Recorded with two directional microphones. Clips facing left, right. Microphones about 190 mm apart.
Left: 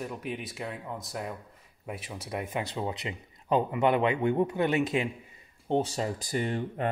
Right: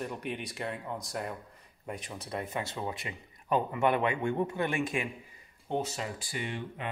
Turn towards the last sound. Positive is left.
turn(degrees=40)  # may be behind; listen again after turning